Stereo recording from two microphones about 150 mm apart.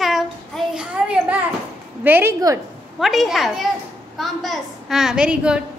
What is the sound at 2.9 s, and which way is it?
A woman's voice, centre (ahead or behind).